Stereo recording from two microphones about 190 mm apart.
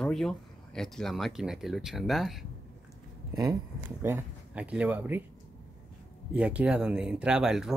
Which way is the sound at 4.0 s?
10° right (ahead or behind).